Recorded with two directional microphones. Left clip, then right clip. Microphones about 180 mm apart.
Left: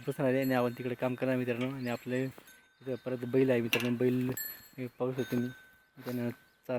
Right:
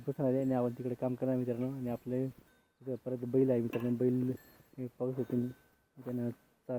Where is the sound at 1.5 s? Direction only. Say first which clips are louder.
Left 2 dB; 40° left (ahead or behind).